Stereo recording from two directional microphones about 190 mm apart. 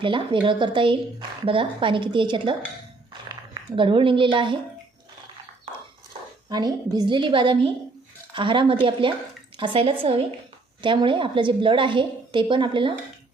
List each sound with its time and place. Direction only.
0.0 s a woman's voice: 25° right (ahead or behind)
6.5 s a woman's voice: 20° right (ahead or behind)